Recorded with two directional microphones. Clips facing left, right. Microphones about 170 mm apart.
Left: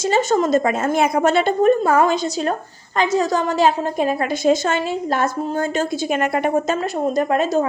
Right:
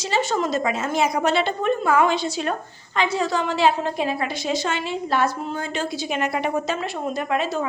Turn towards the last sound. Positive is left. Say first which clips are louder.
# left 6 dB
turn(degrees=45)  # may be behind; listen again after turning